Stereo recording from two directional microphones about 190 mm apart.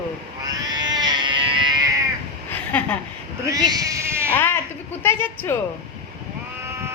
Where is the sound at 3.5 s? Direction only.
20° right (ahead or behind).